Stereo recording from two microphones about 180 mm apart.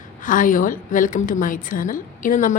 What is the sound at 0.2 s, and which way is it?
A woman's voice, 45° left (ahead or behind).